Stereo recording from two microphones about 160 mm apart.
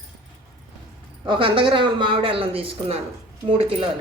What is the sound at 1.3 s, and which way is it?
Speech, 30° right (ahead or behind).